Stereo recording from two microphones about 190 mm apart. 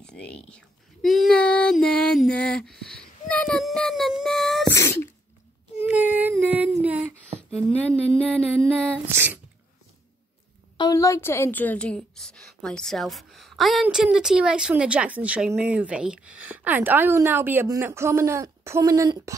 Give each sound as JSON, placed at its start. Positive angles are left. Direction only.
{"t": 0.0, "sound": "child singing", "side_deg": 5}
{"t": 4.7, "sound": "sneeze", "side_deg": 15}
{"t": 5.8, "sound": "a sound", "side_deg": -10}
{"t": 7.3, "sound": "a sound", "side_deg": -35}
{"t": 8.2, "sound": "female singing", "side_deg": -10}
{"t": 10.8, "sound": "a woman's voice", "side_deg": 15}